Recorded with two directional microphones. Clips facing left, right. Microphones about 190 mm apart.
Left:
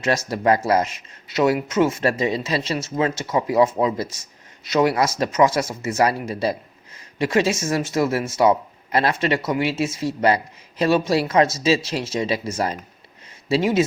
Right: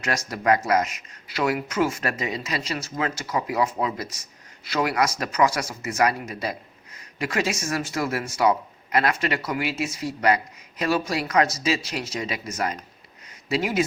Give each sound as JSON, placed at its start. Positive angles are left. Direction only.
{"t": 0.0, "sound": "speech", "side_deg": 25}